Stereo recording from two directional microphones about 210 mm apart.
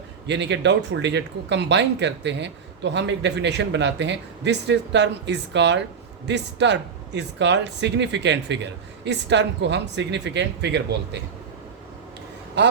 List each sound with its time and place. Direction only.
0.3 s speech: 55° right (ahead or behind)